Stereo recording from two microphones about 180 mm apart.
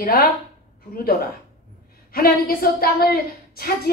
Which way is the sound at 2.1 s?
55° left (ahead or behind).